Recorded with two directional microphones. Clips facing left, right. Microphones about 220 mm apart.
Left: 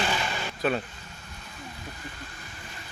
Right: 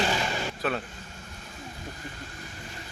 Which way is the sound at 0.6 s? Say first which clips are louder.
Left 4 dB; centre (ahead or behind).